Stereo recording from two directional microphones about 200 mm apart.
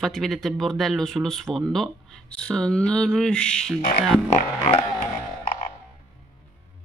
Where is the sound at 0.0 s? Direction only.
Centre (ahead or behind).